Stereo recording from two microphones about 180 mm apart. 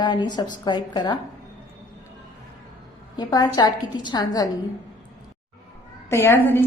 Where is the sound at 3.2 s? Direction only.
20° left (ahead or behind).